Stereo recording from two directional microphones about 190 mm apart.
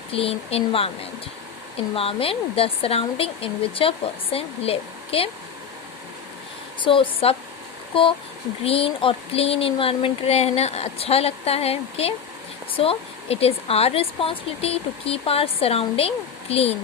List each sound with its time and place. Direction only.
0.1 s speech: 30° left (ahead or behind)
6.8 s speech: 25° left (ahead or behind)